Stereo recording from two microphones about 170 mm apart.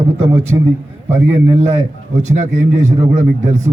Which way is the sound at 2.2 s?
45° right (ahead or behind).